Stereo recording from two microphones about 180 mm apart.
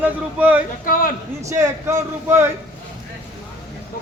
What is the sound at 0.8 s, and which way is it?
Speech, 50° left (ahead or behind).